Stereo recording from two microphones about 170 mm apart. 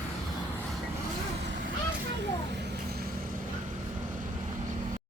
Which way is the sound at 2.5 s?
85° right.